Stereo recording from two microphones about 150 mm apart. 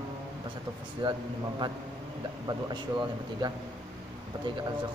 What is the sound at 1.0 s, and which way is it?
Speech, 30° right (ahead or behind).